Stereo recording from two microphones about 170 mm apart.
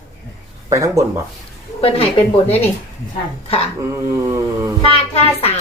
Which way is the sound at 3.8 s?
15° right (ahead or behind).